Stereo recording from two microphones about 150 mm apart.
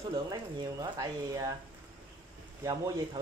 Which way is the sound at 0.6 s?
25° right (ahead or behind).